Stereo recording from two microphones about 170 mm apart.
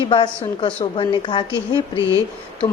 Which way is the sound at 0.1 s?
30° left (ahead or behind).